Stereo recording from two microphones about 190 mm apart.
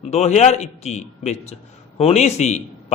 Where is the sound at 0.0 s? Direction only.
35° left (ahead or behind).